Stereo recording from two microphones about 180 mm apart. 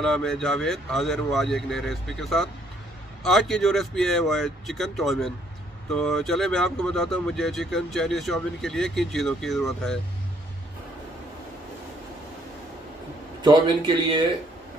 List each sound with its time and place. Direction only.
0.0 s speech: 5° left (ahead or behind)
13.4 s a man's voice: 25° right (ahead or behind)